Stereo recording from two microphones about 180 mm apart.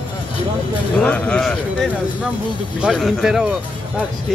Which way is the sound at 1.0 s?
10° left (ahead or behind).